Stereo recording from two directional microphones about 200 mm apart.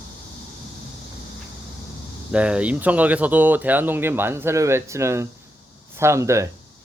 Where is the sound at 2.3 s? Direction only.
5° right (ahead or behind).